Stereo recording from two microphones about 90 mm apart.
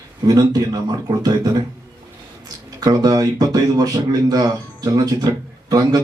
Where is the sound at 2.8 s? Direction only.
45° right (ahead or behind).